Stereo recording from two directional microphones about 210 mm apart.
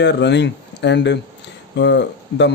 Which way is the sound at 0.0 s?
55° left (ahead or behind).